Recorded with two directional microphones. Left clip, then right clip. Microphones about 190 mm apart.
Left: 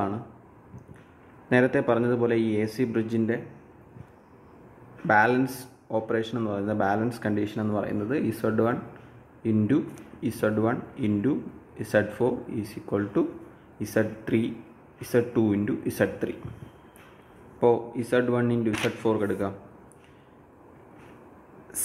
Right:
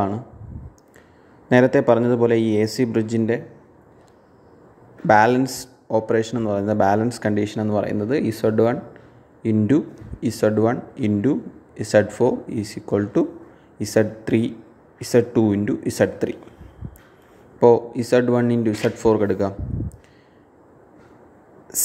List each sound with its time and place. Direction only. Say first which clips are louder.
1.5 s a man's voice: right 7 dB; 30° right (ahead or behind)
5.0 s a man's voice: right 6 dB; 35° right (ahead or behind)
17.6 s a man's voice: right 8 dB; 30° right (ahead or behind)